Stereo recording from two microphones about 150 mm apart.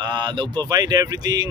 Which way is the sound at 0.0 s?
30° right (ahead or behind).